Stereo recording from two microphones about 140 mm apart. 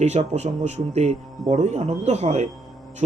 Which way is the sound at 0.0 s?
50° right (ahead or behind).